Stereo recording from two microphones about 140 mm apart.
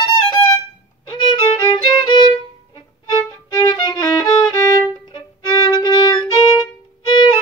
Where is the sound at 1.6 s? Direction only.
35° left (ahead or behind).